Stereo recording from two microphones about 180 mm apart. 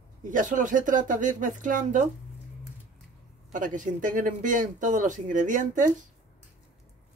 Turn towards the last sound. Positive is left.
turn(degrees=-45)  # may be behind; listen again after turning